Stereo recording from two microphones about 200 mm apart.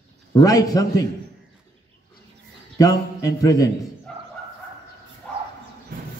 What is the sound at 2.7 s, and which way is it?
Speech, 15° left (ahead or behind).